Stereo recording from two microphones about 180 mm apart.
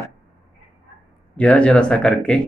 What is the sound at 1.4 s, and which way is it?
Speech, 5° left (ahead or behind).